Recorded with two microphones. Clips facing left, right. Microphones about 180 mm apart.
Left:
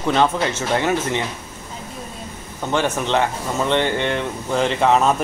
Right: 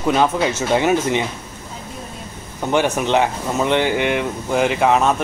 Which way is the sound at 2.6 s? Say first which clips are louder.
Right 3 dB; 15° right (ahead or behind).